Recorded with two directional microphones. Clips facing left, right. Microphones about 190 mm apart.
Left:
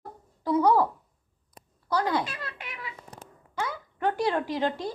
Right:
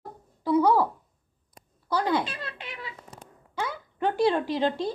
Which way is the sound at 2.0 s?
25° right (ahead or behind).